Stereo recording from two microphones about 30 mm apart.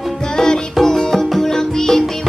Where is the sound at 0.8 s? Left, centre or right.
Centre.